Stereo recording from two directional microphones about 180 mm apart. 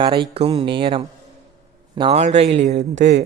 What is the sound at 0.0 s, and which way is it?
A man's voice, 30° right (ahead or behind).